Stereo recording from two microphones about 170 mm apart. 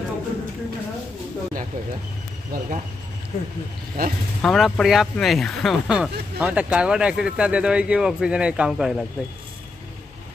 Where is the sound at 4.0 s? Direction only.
60° right (ahead or behind).